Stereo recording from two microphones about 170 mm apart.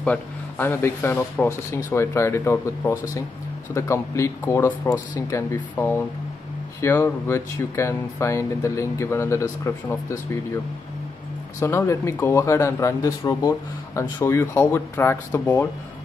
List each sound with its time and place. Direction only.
0.0 s speech: 10° left (ahead or behind)
11.6 s speech: 15° left (ahead or behind)